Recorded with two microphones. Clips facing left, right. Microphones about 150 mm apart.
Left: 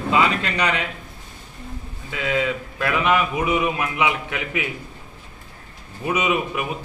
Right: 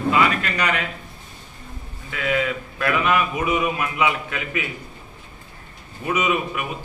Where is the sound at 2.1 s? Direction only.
20° left (ahead or behind).